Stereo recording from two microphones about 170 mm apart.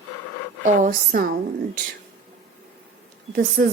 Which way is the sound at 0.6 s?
55° right (ahead or behind).